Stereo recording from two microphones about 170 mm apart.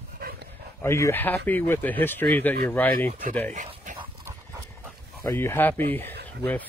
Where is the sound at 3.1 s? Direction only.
50° right (ahead or behind).